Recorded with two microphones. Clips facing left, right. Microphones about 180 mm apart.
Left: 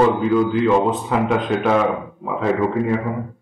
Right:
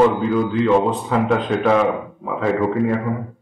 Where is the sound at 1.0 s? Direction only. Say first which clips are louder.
Right 1 dB; centre (ahead or behind).